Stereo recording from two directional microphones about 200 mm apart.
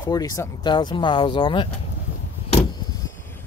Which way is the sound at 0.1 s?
20° left (ahead or behind).